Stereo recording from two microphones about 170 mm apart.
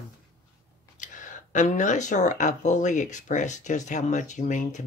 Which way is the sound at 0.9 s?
50° left (ahead or behind).